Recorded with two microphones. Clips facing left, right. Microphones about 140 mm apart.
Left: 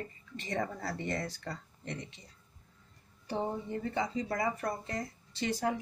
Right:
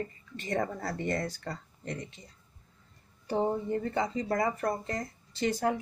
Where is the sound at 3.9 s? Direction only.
45° right (ahead or behind).